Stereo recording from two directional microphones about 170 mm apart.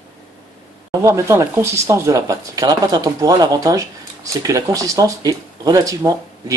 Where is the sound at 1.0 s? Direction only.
15° right (ahead or behind).